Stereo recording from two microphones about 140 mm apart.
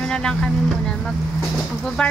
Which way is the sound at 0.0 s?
5° left (ahead or behind).